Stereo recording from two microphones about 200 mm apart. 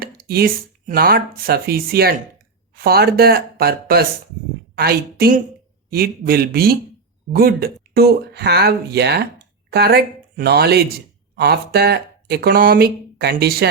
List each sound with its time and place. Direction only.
0.0 s speech: 50° right (ahead or behind)